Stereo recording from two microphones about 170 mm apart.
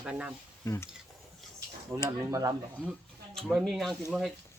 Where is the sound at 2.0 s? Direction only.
15° right (ahead or behind).